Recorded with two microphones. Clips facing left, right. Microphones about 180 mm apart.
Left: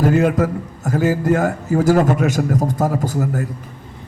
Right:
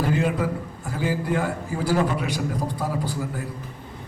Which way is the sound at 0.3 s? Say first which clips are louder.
Left 7 dB; 45° left (ahead or behind).